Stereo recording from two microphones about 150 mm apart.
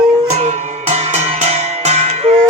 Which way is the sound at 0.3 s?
50° right (ahead or behind).